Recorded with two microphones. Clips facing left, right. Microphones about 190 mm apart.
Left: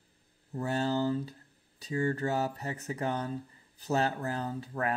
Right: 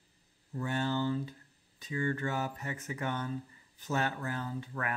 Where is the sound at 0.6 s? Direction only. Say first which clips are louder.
Left 3 dB; 35° left (ahead or behind).